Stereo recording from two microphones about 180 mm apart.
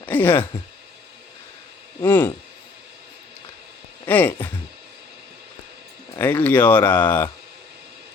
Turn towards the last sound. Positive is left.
turn(degrees=10)  # may be behind; listen again after turning